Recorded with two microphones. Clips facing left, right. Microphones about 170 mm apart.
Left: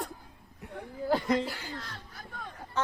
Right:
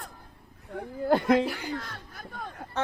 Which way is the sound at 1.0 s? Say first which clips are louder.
Right 5 dB; 60° right (ahead or behind).